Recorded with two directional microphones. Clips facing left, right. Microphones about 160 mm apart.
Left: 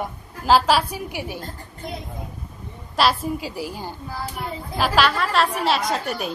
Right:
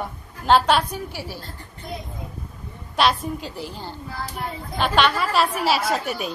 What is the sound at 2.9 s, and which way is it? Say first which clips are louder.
A woman's voice: even; centre (ahead or behind).